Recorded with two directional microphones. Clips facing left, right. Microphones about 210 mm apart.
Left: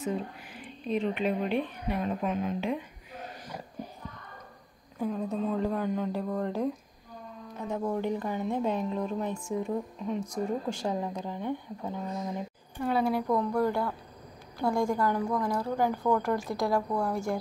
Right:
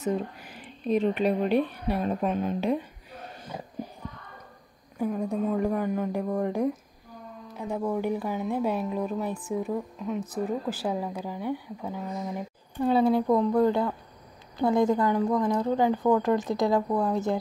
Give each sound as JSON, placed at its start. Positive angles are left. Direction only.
{"t": 0.0, "sound": "speech", "side_deg": -40}
{"t": 4.9, "sound": "speech", "side_deg": -10}
{"t": 12.8, "sound": "a woman's voice", "side_deg": -25}